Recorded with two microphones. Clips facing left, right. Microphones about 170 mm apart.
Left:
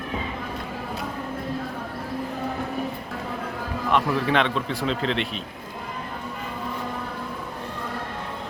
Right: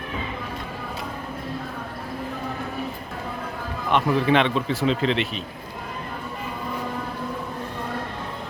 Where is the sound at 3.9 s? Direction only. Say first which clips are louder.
Right 3 dB; centre (ahead or behind).